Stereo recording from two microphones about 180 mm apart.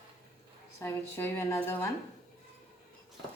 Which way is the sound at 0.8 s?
15° left (ahead or behind).